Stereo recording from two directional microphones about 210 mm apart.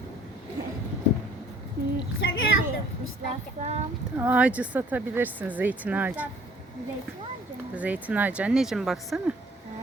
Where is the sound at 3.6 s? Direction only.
30° right (ahead or behind).